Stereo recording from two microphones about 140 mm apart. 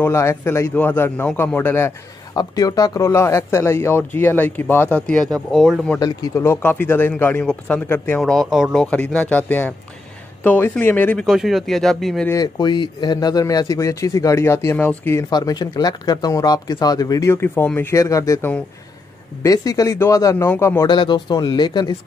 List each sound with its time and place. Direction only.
0.0 s speech: 20° left (ahead or behind)
2.3 s speech: 25° left (ahead or behind); by 5.8 s centre (ahead or behind)
5.9 s a man's voice: 30° left (ahead or behind)
6.3 s speech: 15° left (ahead or behind)
8.2 s speech: centre (ahead or behind)
8.9 s speech: 10° left (ahead or behind)
11.2 s speech: centre (ahead or behind)
12.3 s a man's voice: 25° left (ahead or behind)
15.2 s a man's voice: 30° left (ahead or behind)
20.8 s speech: 35° left (ahead or behind)